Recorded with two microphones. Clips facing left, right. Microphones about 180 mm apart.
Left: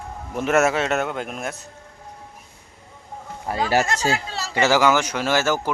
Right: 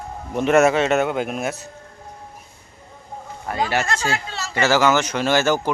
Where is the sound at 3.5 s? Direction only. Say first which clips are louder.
Left 1 dB; 30° left (ahead or behind).